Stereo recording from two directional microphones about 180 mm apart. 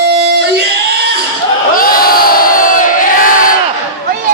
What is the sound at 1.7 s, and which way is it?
Crowd, 55° left (ahead or behind).